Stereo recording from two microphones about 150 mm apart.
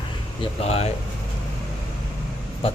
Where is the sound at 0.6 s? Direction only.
45° left (ahead or behind).